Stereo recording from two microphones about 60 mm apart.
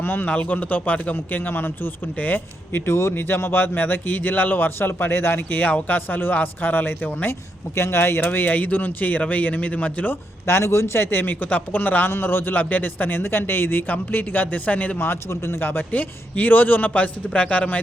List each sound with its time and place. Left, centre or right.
0.0 s speech: left
2.8 s speech: left
5.4 s speech: left
8.2 s speech: left
10.4 s speech: left